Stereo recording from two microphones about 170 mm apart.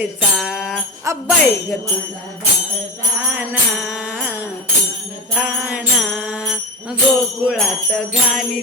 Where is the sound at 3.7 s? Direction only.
5° right (ahead or behind).